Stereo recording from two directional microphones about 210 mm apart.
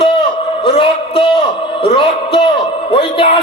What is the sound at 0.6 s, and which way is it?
A man's voice, 25° left (ahead or behind).